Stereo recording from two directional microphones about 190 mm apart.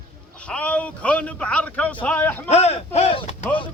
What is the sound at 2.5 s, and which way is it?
Speech, 35° left (ahead or behind).